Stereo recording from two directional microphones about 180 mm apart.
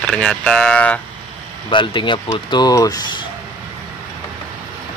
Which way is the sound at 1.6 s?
25° left (ahead or behind).